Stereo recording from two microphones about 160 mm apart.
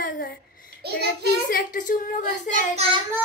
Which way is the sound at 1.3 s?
65° left (ahead or behind).